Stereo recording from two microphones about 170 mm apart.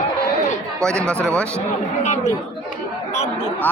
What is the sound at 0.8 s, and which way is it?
Speech, 5° left (ahead or behind).